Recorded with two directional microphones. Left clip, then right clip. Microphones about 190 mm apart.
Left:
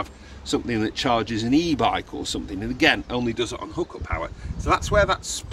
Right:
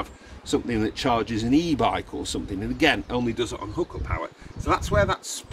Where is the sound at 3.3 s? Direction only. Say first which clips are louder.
Left 1 dB; centre (ahead or behind).